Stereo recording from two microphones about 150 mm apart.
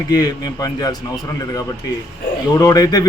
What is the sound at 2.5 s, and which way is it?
Speech, 25° left (ahead or behind).